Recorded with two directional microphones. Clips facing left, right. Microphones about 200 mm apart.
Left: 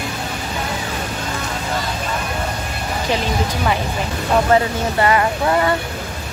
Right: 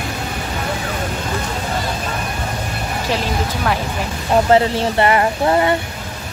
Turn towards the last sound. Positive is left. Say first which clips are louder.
# right 2 dB
turn(degrees=-25)  # may be behind; listen again after turning